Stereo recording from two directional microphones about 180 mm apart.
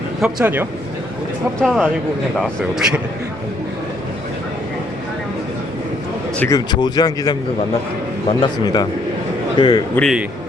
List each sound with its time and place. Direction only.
0.2 s speech: 5° right (ahead or behind)
6.4 s speech: 20° left (ahead or behind)
8.4 s speech: 20° left (ahead or behind)
9.9 s speech: 5° left (ahead or behind)